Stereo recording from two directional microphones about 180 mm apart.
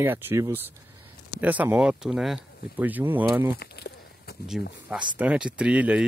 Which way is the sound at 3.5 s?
65° left (ahead or behind).